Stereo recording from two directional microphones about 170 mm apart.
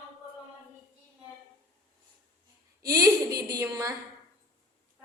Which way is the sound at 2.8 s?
20° right (ahead or behind).